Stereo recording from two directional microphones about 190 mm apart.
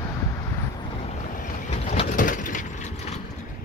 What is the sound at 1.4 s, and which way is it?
Vehicle, 40° left (ahead or behind).